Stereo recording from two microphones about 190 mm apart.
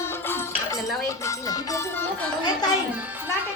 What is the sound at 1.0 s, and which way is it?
Speech, 15° left (ahead or behind).